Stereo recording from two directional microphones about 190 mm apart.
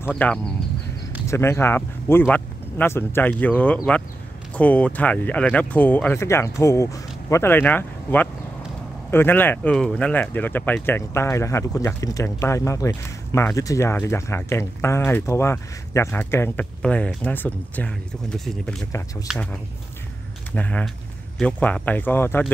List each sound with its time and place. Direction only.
0.0 s speech: 5° left (ahead or behind)
18.9 s speech: 15° left (ahead or behind)
19.2 s speech: centre (ahead or behind)
20.5 s speech: 5° left (ahead or behind)